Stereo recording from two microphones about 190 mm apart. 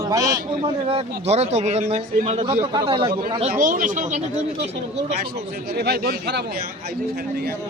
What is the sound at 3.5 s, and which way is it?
Speech, 45° right (ahead or behind).